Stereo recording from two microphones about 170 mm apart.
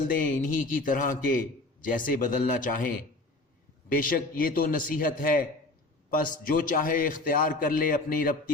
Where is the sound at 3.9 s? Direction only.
55° left (ahead or behind).